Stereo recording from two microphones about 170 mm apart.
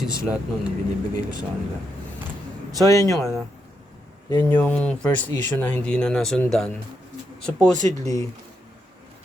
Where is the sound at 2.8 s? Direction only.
20° left (ahead or behind).